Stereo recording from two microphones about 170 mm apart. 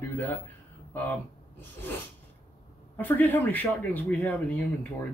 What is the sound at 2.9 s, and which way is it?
Speech, 10° left (ahead or behind).